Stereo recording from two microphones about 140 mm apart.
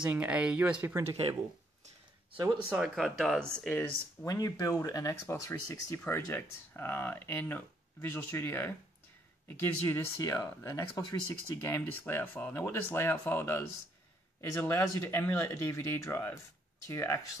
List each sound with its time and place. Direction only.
0.0 s speech: 10° right (ahead or behind)
2.3 s speech: 35° right (ahead or behind)
2.8 s speech: centre (ahead or behind)
3.6 s speech: 10° left (ahead or behind)
4.3 s speech: 25° left (ahead or behind)